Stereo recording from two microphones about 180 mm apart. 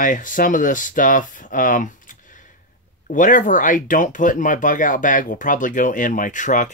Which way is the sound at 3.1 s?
45° left (ahead or behind).